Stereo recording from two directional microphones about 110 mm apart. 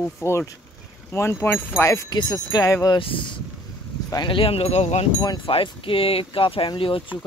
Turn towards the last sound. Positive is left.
turn(degrees=50)  # may be behind; listen again after turning